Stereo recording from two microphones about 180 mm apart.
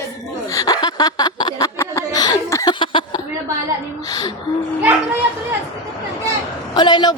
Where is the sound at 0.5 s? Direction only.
20° left (ahead or behind).